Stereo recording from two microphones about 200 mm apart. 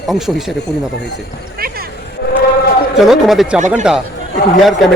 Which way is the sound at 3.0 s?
Centre (ahead or behind).